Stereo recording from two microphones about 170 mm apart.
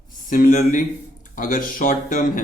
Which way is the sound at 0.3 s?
55° left (ahead or behind).